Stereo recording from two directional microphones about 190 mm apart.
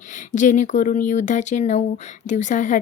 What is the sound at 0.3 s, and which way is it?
A woman's voice, 40° left (ahead or behind).